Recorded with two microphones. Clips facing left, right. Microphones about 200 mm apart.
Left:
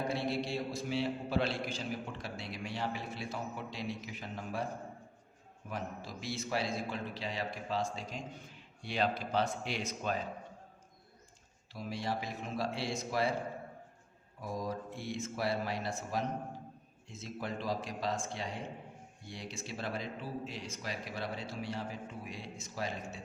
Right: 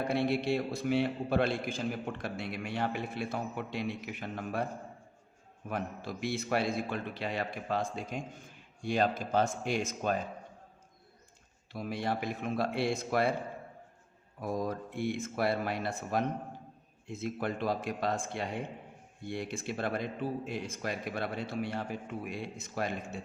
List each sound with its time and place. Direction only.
0.1 s a man's voice: 60° right (ahead or behind)
5.6 s a man's voice: 60° right (ahead or behind)
11.7 s a man's voice: 55° right (ahead or behind)
14.4 s a man's voice: 60° right (ahead or behind)